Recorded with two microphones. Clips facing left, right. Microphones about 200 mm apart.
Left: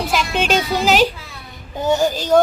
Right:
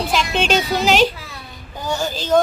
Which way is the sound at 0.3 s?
5° left (ahead or behind).